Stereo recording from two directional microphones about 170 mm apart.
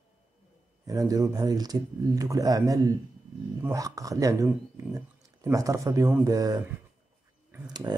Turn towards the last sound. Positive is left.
turn(degrees=-20)  # may be behind; listen again after turning